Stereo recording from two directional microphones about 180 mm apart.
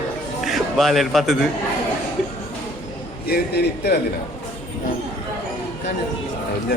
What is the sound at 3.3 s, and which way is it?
Speech, 60° left (ahead or behind).